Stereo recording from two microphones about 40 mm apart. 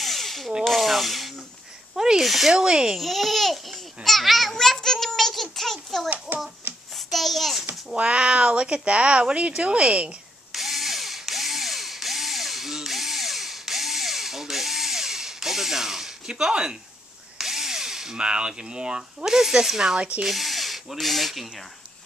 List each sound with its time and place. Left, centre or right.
0.0 s a sound: centre
0.7 s speech: centre
2.0 s a child's voice: centre
2.5 s speech: centre
3.0 s a child's voice: centre
4.6 s a child's voice: centre
6.3 s a child's voice: right
6.6 s a sound: right
7.1 s a child's voice: centre
7.9 s speech: right
10.5 s drill: centre
18.1 s speech: right; by 21.5 s centre